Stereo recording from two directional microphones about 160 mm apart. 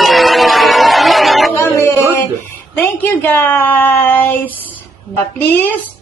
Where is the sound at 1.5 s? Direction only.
15° left (ahead or behind).